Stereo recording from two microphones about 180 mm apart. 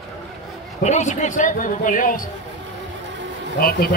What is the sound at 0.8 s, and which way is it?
Speech, 40° left (ahead or behind).